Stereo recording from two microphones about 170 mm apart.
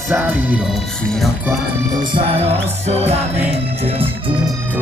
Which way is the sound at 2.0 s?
30° right (ahead or behind).